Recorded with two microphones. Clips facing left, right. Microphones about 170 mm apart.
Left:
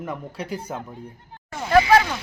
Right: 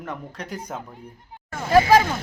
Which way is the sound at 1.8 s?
50° right (ahead or behind).